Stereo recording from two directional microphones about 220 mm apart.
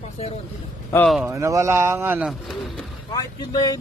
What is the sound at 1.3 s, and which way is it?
Speech, 15° right (ahead or behind).